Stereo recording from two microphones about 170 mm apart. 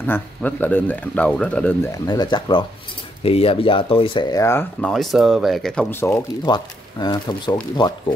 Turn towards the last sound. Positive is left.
turn(degrees=25)  # may be behind; listen again after turning